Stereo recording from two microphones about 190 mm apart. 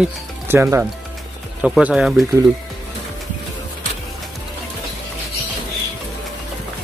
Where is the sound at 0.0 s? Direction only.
15° right (ahead or behind).